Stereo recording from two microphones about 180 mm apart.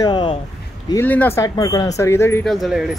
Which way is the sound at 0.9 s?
10° left (ahead or behind).